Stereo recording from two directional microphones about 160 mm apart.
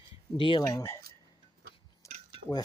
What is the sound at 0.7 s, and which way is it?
Speech, 20° left (ahead or behind).